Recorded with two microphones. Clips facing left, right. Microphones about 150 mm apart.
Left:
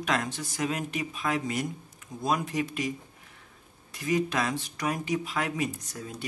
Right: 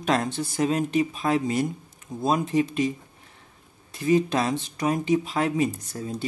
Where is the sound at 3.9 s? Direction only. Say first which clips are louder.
Right 6 dB; 30° right (ahead or behind).